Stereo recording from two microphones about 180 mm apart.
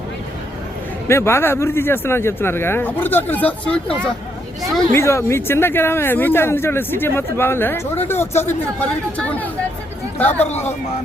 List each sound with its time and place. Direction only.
1.0 s speech: 15° left (ahead or behind)
4.9 s speech: 15° left (ahead or behind)
10.4 s speech: 35° left (ahead or behind)